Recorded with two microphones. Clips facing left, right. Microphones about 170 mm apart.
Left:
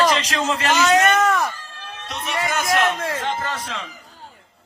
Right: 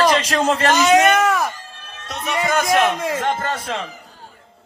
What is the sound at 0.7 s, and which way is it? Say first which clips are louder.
Speech: right 1 dB; 15° right (ahead or behind).